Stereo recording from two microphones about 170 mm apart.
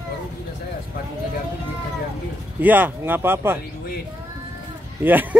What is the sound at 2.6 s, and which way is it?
Speech, 10° right (ahead or behind).